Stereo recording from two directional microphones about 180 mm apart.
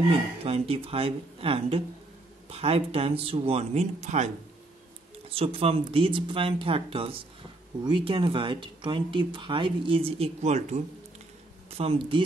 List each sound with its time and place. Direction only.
0.4 s speech: 30° right (ahead or behind)
5.3 s speech: 35° right (ahead or behind)